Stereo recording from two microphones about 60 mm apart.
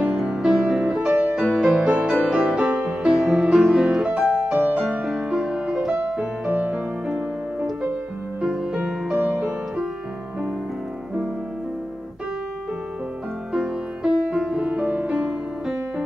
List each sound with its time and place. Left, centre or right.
0.0 s music: centre; by 4.7 s right
5.0 s music: centre
7.1 s music: centre
13.5 s music: centre